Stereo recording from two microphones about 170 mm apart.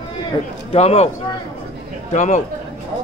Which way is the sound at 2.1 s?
45° left (ahead or behind).